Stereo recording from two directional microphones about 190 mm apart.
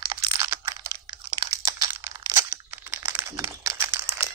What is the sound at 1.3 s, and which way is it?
Crumpling, 20° right (ahead or behind).